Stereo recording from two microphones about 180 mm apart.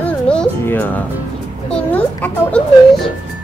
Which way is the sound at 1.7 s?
10° left (ahead or behind).